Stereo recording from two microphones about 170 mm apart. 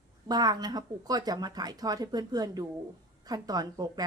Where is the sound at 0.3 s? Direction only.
25° right (ahead or behind).